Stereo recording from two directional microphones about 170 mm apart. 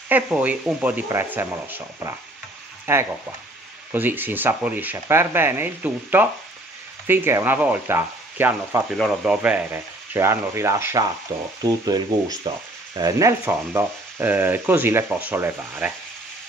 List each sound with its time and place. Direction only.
0.1 s speech: 10° right (ahead or behind)